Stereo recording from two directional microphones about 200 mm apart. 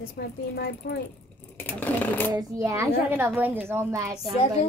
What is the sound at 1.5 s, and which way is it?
Sewing machine, 10° left (ahead or behind).